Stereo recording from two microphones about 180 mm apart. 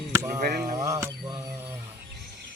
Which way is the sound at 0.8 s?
20° right (ahead or behind).